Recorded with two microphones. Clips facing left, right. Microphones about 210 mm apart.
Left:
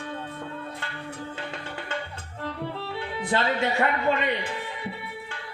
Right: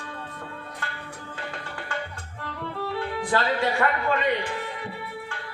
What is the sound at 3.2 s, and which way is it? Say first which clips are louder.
Music: even; 25° left (ahead or behind).